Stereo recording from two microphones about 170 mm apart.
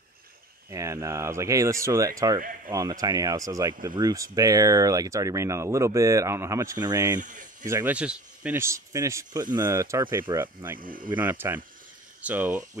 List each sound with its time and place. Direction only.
0.7 s speech: 15° right (ahead or behind)
7.2 s speech: 50° right (ahead or behind)
7.6 s speech: 15° right (ahead or behind)
10.8 s speech: 55° right (ahead or behind)
11.1 s speech: 10° right (ahead or behind)